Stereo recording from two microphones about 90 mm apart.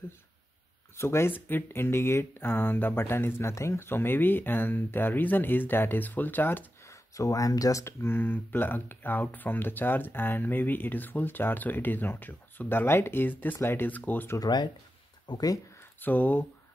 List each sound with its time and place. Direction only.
0.9 s speech: 25° left (ahead or behind)
14.4 s speech: 50° left (ahead or behind)
15.8 s speech: 20° left (ahead or behind)